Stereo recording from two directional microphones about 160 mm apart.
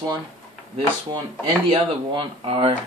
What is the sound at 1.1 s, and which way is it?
Speech, 30° right (ahead or behind).